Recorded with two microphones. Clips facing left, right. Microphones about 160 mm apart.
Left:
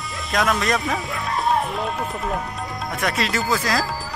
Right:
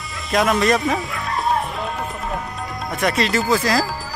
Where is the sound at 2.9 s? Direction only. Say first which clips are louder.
Right 4 dB; centre (ahead or behind).